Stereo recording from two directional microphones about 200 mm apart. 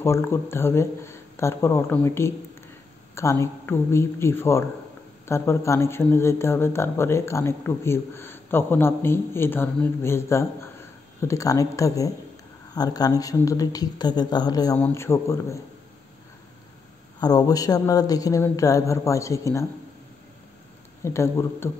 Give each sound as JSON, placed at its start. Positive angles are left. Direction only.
{"t": 0.0, "sound": "speech", "side_deg": 10}
{"t": 17.2, "sound": "speech", "side_deg": 20}
{"t": 21.0, "sound": "speech", "side_deg": 15}